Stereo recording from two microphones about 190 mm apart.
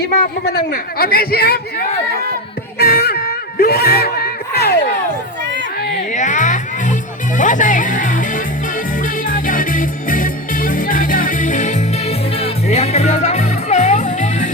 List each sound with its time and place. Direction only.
0.2 s a man's voice: 50° left (ahead or behind)
2.7 s music: 55° left (ahead or behind)
6.1 s music: 40° left (ahead or behind)